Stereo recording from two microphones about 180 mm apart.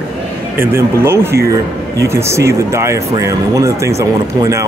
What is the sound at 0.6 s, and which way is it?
Speech, 15° right (ahead or behind).